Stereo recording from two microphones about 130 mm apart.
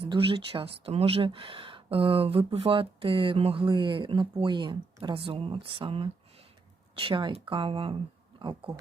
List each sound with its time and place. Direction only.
0.0 s speech: 45° right (ahead or behind)